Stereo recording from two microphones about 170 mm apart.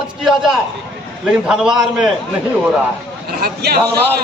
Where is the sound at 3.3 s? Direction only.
65° right (ahead or behind).